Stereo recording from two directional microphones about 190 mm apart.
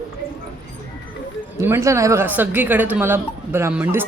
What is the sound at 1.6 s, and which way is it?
Speech, 15° right (ahead or behind).